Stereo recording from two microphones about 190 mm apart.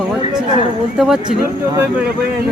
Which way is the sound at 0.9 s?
Centre (ahead or behind).